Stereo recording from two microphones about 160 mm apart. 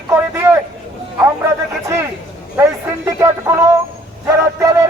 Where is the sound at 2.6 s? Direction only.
15° right (ahead or behind).